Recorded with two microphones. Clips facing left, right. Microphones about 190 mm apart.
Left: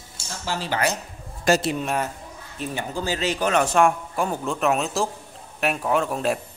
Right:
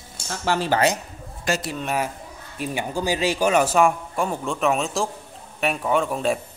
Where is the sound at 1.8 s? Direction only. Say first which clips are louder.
Even; 5° right (ahead or behind).